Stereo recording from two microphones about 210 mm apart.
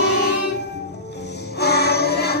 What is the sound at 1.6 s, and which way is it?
Music, 50° left (ahead or behind).